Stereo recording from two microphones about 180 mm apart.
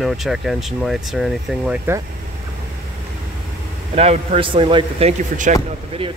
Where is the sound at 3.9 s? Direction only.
30° right (ahead or behind).